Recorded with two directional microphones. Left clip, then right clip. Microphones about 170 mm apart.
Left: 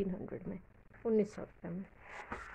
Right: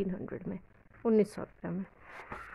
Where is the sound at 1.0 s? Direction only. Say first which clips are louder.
Right 5 dB; 45° right (ahead or behind).